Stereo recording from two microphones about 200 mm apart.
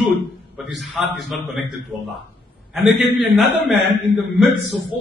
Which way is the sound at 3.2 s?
5° right (ahead or behind).